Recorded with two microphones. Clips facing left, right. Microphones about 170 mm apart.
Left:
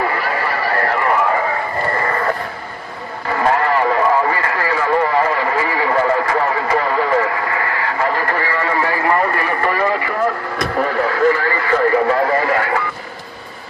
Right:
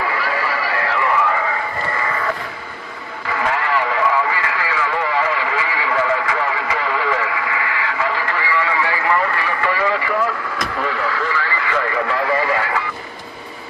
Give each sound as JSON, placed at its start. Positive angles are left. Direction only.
{"t": 0.0, "sound": "neigh", "side_deg": 45}
{"t": 2.0, "sound": "a sound", "side_deg": 50}
{"t": 3.3, "sound": "radio", "side_deg": 45}